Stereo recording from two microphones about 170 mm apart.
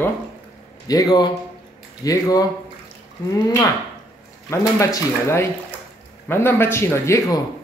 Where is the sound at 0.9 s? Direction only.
20° left (ahead or behind).